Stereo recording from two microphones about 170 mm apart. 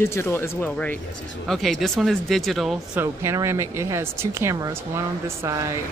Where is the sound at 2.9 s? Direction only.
15° right (ahead or behind).